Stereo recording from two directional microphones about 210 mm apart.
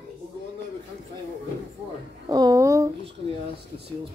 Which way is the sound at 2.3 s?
15° right (ahead or behind).